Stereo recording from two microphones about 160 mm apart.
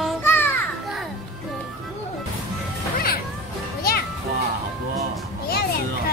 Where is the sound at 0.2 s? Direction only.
15° left (ahead or behind).